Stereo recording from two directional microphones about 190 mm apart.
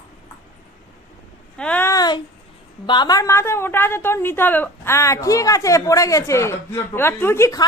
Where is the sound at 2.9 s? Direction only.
20° left (ahead or behind).